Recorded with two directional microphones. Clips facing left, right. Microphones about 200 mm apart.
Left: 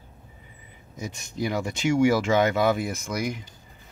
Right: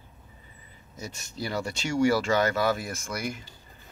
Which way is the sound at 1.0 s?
15° left (ahead or behind).